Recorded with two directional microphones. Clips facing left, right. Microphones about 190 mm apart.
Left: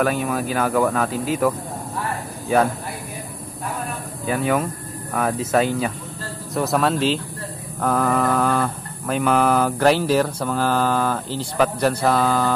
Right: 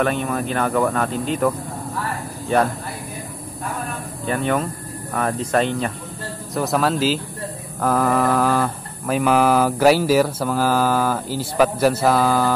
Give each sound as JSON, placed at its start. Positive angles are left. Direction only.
{"t": 0.0, "sound": "mantra", "side_deg": 5}
{"t": 2.5, "sound": "mantra", "side_deg": 5}
{"t": 4.3, "sound": "mantra", "side_deg": 5}